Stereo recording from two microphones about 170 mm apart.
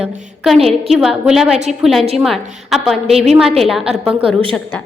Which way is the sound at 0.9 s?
5° right (ahead or behind).